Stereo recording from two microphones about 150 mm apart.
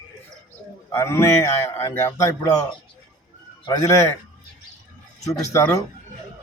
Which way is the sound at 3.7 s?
20° left (ahead or behind).